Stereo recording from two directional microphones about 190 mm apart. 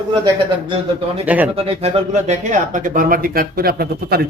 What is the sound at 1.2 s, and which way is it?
Speech, 10° right (ahead or behind).